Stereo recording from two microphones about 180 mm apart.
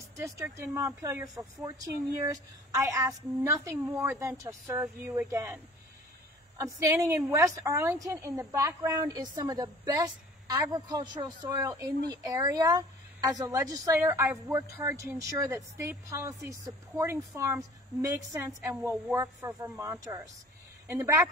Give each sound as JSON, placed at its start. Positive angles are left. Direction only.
{"t": 0.2, "sound": "a woman's voice", "side_deg": -15}
{"t": 6.6, "sound": "a woman's voice", "side_deg": -15}